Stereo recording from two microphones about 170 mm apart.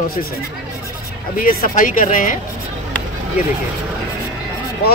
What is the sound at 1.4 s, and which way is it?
Speech, 55° left (ahead or behind).